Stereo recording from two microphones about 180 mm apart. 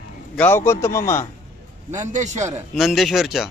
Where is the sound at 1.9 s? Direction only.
40° right (ahead or behind).